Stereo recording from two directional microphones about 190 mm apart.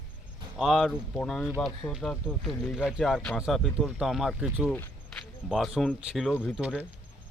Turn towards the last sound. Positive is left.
turn(degrees=-5)  # may be behind; listen again after turning